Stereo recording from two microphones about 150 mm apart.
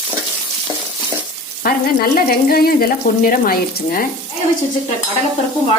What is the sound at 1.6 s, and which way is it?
Frying, 80° left.